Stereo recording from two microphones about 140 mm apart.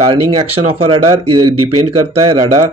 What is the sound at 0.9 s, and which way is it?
Speech, 35° right (ahead or behind).